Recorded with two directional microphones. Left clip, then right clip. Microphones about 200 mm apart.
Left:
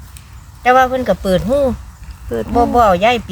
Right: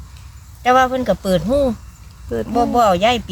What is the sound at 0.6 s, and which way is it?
Speech, 10° right (ahead or behind).